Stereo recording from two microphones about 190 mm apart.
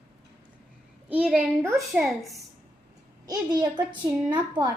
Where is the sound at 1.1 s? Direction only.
5° right (ahead or behind).